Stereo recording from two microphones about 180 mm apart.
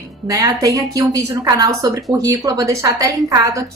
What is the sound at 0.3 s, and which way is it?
A woman's voice, 20° right (ahead or behind).